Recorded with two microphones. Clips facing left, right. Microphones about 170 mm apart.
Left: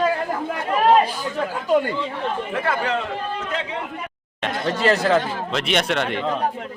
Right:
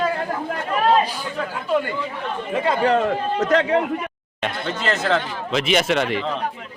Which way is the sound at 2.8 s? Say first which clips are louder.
Right 6 dB; 40° right (ahead or behind).